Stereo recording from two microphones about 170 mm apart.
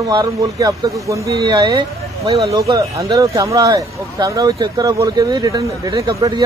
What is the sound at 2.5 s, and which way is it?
A man's voice, 20° right (ahead or behind).